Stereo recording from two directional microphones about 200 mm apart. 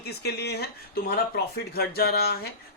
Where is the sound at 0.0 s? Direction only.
55° left (ahead or behind).